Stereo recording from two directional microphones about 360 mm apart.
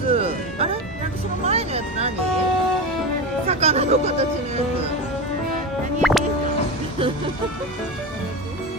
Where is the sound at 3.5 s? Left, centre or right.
Centre.